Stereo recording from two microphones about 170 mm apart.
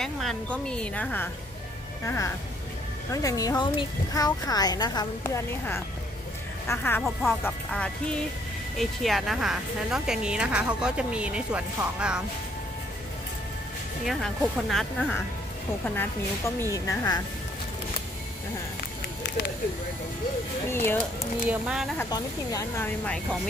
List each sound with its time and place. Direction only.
0.0 s a woman's voice: 5° left (ahead or behind)
14.0 s a woman's voice: centre (ahead or behind)
16.7 s a woman's voice: 20° left (ahead or behind)
20.7 s speech: 10° left (ahead or behind)
21.5 s a woman's voice: 5° right (ahead or behind)
22.1 s a woman's voice: 20° left (ahead or behind)